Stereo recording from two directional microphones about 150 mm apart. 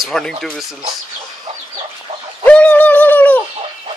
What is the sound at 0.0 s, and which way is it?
Speech, 5° left (ahead or behind).